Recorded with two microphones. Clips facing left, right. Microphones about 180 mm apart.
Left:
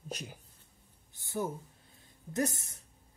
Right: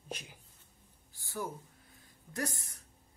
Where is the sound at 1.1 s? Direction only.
20° left (ahead or behind).